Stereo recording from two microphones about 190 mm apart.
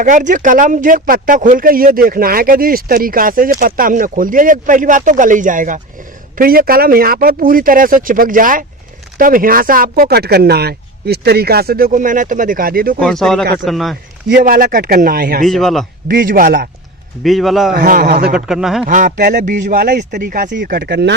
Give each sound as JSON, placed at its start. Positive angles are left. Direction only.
{"t": 0.0, "sound": "speech", "side_deg": -45}
{"t": 13.0, "sound": "a man's voice", "side_deg": 5}
{"t": 14.3, "sound": "speech", "side_deg": -50}
{"t": 15.4, "sound": "a man's voice", "side_deg": 0}
{"t": 16.0, "sound": "speech", "side_deg": -50}
{"t": 17.2, "sound": "a man's voice", "side_deg": 0}
{"t": 17.7, "sound": "speech", "side_deg": -45}
{"t": 18.3, "sound": "a man's voice", "side_deg": 0}
{"t": 18.9, "sound": "speech", "side_deg": -45}
{"t": 20.5, "sound": "speech", "side_deg": -60}